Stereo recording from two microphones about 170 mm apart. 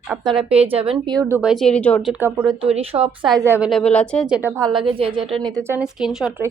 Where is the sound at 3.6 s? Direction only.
5° left (ahead or behind).